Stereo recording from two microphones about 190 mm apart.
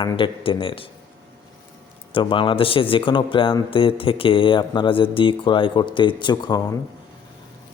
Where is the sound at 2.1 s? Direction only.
25° left (ahead or behind).